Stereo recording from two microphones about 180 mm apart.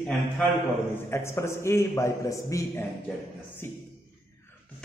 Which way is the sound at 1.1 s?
15° left (ahead or behind).